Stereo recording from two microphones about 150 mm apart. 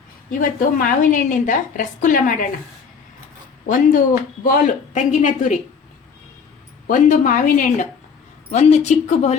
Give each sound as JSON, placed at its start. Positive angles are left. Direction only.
{"t": 0.3, "sound": "a woman's voice", "side_deg": 65}
{"t": 3.7, "sound": "a woman's voice", "side_deg": 65}
{"t": 6.8, "sound": "a woman's voice", "side_deg": 60}
{"t": 8.4, "sound": "speech", "side_deg": 50}